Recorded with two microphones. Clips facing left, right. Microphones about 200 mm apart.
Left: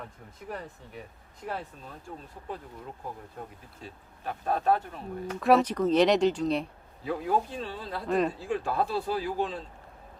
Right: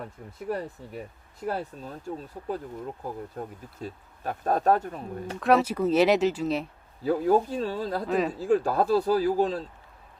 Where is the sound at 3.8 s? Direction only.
40° right (ahead or behind).